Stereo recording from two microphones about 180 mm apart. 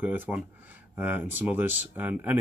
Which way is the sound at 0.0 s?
10° right (ahead or behind).